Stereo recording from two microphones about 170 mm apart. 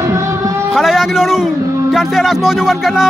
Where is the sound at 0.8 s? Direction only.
Centre (ahead or behind).